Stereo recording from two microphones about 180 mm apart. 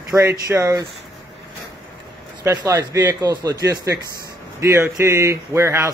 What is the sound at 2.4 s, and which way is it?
Speech, 15° right (ahead or behind).